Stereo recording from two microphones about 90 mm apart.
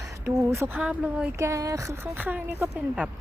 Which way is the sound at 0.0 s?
30° right (ahead or behind).